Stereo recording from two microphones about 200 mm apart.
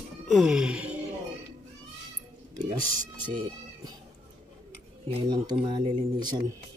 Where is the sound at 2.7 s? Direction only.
40° right (ahead or behind).